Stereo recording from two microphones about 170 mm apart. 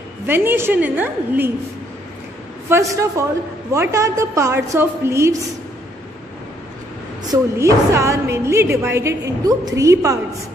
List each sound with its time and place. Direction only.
0.3 s a woman's voice: 10° right (ahead or behind)
2.7 s a woman's voice: 20° right (ahead or behind)
7.2 s a woman's voice: 15° right (ahead or behind)